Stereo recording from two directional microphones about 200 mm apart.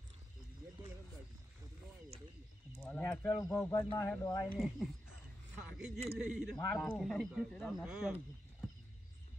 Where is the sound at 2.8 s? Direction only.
10° left (ahead or behind).